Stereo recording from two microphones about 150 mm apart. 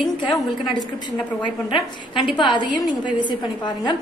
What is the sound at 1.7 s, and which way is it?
A woman's voice, 30° left (ahead or behind).